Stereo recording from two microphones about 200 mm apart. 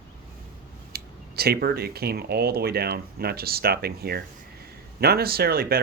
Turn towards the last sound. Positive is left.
turn(degrees=-50)  # may be behind; listen again after turning